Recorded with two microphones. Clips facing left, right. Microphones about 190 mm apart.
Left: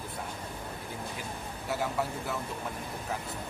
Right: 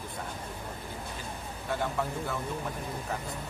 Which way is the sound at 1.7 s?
5° left (ahead or behind).